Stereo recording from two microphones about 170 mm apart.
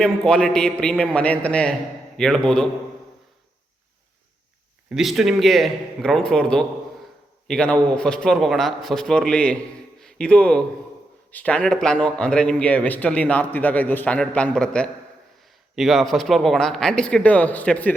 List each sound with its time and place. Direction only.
0.0 s speech: 5° left (ahead or behind)
4.9 s a man's voice: centre (ahead or behind)